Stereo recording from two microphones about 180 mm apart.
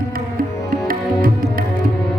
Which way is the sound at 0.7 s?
55° right (ahead or behind).